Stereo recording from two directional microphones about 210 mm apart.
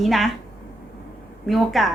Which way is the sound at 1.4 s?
Centre (ahead or behind).